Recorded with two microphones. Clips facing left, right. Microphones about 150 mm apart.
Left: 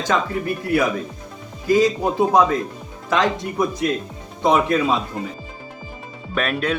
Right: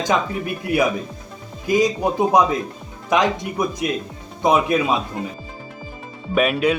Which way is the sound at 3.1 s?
15° right (ahead or behind).